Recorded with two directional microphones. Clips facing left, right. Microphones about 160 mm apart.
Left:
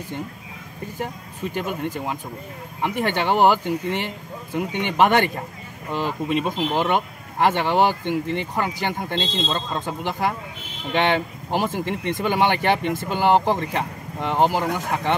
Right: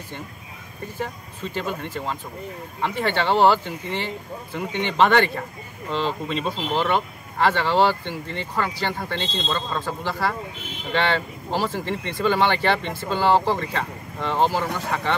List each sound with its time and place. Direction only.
0.9 s speech: 15° left (ahead or behind)